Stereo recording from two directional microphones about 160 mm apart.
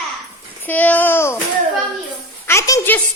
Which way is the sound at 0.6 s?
10° left (ahead or behind).